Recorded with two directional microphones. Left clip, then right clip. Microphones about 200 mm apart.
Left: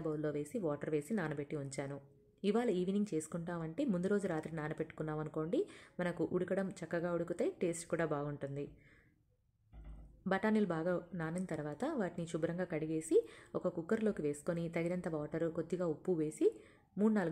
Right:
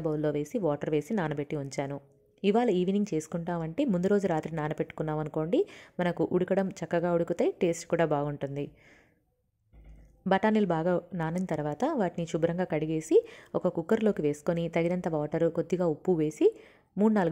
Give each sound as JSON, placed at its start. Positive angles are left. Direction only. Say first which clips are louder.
{"t": 0.0, "sound": "speech", "louder": "right 9 dB", "side_deg": -30}
{"t": 10.2, "sound": "a woman's voice", "louder": "right 9 dB", "side_deg": -30}